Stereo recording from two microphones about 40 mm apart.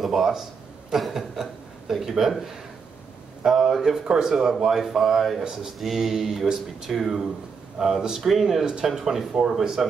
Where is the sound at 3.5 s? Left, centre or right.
Centre.